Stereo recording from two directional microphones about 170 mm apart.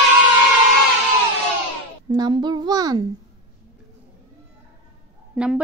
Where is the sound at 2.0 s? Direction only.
25° right (ahead or behind).